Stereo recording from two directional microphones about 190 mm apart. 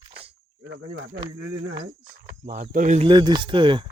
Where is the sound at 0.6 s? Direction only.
85° right.